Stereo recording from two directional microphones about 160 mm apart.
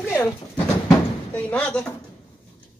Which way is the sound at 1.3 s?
10° left (ahead or behind).